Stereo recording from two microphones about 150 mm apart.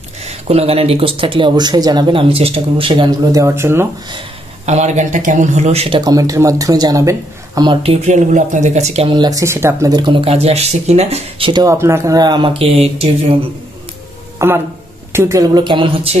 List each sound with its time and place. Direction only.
0.2 s speech: 45° right (ahead or behind)
3.3 s speech: 20° right (ahead or behind)
4.6 s speech: 50° right (ahead or behind)
6.0 s speech: 20° right (ahead or behind)
7.8 s speech: 45° right (ahead or behind)
11.6 s speech: 20° right (ahead or behind); by 13.5 s 40° right (ahead or behind)
14.4 s speech: 20° right (ahead or behind); by 16.2 s 35° right (ahead or behind)